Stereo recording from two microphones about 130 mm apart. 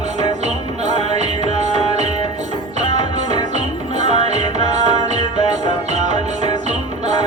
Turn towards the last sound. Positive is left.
turn(degrees=-65)  # may be behind; listen again after turning